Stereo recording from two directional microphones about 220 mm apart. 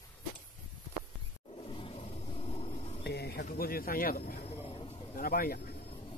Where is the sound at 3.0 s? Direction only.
45° left (ahead or behind).